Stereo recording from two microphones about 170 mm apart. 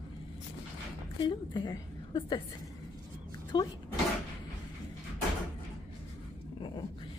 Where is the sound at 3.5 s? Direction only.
25° left (ahead or behind).